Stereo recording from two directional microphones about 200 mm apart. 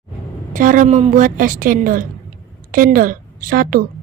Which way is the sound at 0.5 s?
40° right (ahead or behind).